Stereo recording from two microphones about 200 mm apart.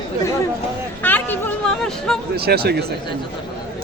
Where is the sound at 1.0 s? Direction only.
10° left (ahead or behind).